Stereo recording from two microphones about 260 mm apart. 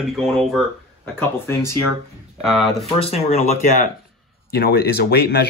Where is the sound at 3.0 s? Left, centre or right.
Left.